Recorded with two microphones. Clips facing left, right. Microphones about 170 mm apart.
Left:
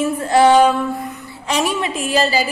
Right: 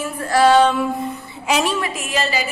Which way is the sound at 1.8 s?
35° left (ahead or behind).